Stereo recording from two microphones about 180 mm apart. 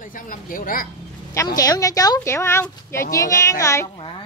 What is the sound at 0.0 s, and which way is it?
Speech, 50° left (ahead or behind).